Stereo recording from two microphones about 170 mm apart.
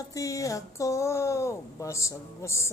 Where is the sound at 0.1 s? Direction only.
20° left (ahead or behind).